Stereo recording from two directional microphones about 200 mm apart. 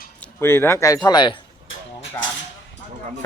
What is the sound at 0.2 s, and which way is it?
Speech, 10° left (ahead or behind).